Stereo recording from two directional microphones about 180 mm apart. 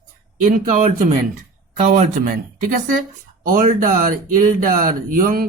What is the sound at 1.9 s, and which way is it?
Speech, 50° right (ahead or behind).